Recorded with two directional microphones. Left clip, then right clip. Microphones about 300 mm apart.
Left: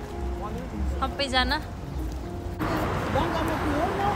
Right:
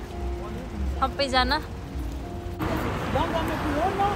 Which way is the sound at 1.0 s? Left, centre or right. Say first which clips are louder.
Right 2 dB; centre.